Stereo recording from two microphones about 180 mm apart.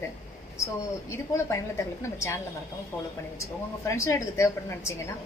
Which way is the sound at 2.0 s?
15° left (ahead or behind).